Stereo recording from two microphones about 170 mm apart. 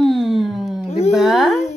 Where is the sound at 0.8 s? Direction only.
40° left (ahead or behind).